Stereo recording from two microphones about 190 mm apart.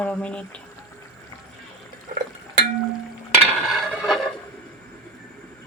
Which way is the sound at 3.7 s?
Centre (ahead or behind).